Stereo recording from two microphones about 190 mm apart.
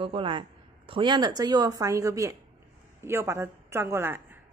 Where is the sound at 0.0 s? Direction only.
25° right (ahead or behind); by 4.4 s 10° right (ahead or behind).